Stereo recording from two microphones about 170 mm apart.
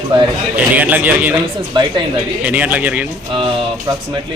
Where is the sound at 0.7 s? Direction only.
10° right (ahead or behind).